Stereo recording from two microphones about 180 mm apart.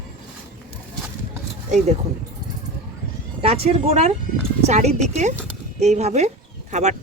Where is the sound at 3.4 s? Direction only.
35° right (ahead or behind).